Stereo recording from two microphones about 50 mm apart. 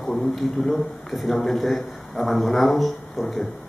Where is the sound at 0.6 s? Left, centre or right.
Centre.